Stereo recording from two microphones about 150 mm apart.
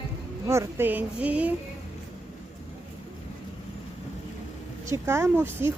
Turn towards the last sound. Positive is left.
turn(degrees=-15)  # may be behind; listen again after turning